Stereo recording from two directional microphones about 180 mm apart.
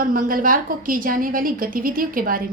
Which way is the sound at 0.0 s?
50° right (ahead or behind).